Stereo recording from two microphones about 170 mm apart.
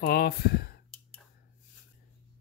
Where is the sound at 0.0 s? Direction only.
70° left (ahead or behind).